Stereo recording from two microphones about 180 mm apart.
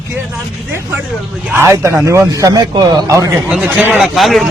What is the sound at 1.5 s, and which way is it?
A man's voice, 15° right (ahead or behind).